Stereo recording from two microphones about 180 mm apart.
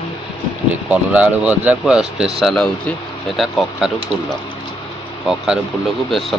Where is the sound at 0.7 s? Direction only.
10° right (ahead or behind).